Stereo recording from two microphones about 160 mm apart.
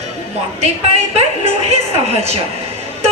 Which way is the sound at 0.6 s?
40° right (ahead or behind).